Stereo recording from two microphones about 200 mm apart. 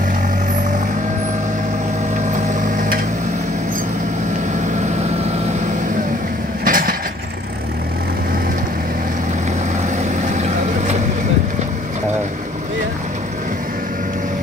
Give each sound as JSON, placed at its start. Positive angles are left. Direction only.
{"t": 2.3, "sound": "vehicle", "side_deg": -40}
{"t": 6.6, "sound": "a sound", "side_deg": -45}
{"t": 10.3, "sound": "vehicle", "side_deg": -35}